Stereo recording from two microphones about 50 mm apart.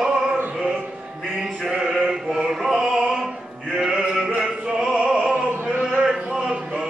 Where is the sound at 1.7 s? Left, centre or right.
Centre.